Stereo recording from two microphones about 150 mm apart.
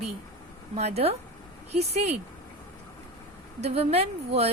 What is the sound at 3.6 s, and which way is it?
Speech, 45° right (ahead or behind).